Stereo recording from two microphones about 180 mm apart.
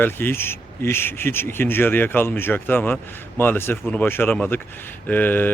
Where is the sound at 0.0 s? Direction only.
10° left (ahead or behind).